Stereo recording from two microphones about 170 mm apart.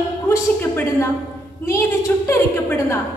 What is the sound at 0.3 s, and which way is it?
Speech, 15° left (ahead or behind).